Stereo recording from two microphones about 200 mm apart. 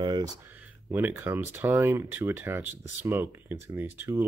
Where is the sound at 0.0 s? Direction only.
20° right (ahead or behind).